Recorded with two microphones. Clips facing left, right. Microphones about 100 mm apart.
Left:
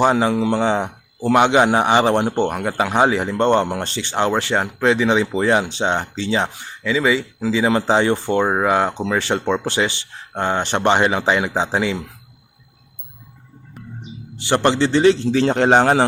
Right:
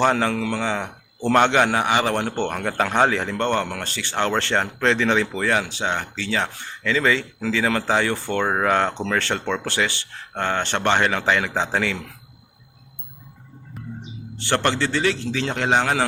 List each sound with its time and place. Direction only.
0.0 s a man's voice: 15° left (ahead or behind)
1.2 s a man's voice: 10° left (ahead or behind)
13.8 s music: centre (ahead or behind)
14.3 s a man's voice: 15° left (ahead or behind); by 16.0 s 35° left (ahead or behind)